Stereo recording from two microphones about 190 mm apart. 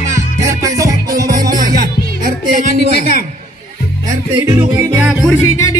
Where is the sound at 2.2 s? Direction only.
45° right (ahead or behind).